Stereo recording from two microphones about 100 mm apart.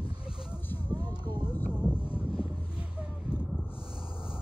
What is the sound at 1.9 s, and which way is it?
Vehicle, 65° left (ahead or behind).